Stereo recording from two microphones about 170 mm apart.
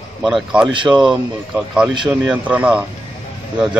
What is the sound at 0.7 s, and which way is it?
Speech, 25° right (ahead or behind).